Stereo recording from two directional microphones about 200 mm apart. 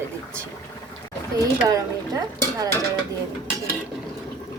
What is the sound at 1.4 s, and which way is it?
Speech, 15° right (ahead or behind).